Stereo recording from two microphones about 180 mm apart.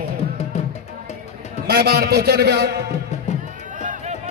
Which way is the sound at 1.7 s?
60° right (ahead or behind).